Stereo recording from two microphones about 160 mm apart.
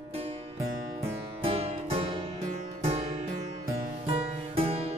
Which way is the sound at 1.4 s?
35° right (ahead or behind).